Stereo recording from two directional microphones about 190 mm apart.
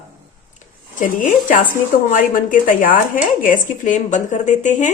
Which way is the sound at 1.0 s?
40° left (ahead or behind).